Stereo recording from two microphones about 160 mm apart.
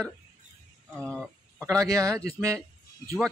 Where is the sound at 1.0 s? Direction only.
5° left (ahead or behind).